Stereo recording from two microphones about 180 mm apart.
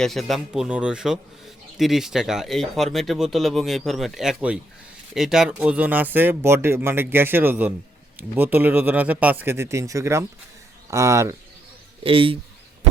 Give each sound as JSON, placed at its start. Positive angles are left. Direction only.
{"t": 0.0, "sound": "speech", "side_deg": 0}
{"t": 12.0, "sound": "speech", "side_deg": -30}